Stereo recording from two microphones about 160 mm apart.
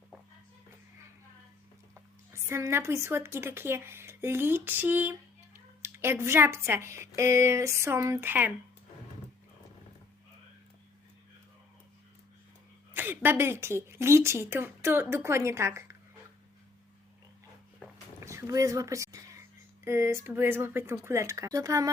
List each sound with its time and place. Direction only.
2.3 s a woman's voice: 15° right (ahead or behind)
12.9 s a woman's voice: 15° right (ahead or behind)
18.2 s a sound: 20° right (ahead or behind)
19.8 s speech: 15° right (ahead or behind)